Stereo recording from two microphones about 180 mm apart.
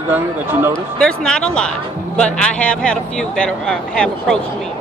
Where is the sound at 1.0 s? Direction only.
5° left (ahead or behind).